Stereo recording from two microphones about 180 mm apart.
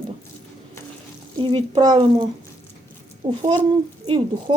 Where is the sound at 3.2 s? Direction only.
25° right (ahead or behind).